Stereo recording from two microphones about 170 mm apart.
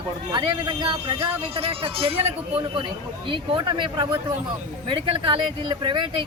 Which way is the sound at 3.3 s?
25° right (ahead or behind).